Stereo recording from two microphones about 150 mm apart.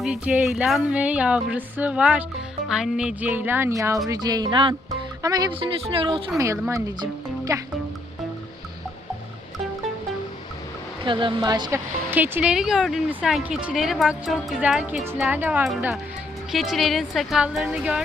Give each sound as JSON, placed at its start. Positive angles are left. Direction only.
{"t": 0.0, "sound": "music", "side_deg": -5}
{"t": 4.1, "sound": "speech", "side_deg": -25}
{"t": 6.4, "sound": "speech", "side_deg": -20}
{"t": 11.0, "sound": "speech", "side_deg": -35}
{"t": 12.1, "sound": "a woman's voice", "side_deg": -15}
{"t": 15.3, "sound": "music", "side_deg": -15}
{"t": 16.5, "sound": "a woman's voice", "side_deg": 0}